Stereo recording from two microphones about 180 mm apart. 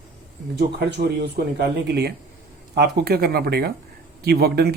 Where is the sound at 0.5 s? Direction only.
70° right (ahead or behind).